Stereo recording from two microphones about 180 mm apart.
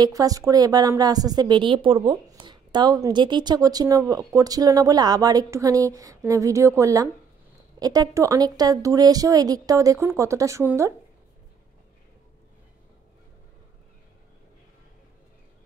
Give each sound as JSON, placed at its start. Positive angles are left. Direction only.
{"t": 0.0, "sound": "a woman's voice", "side_deg": -20}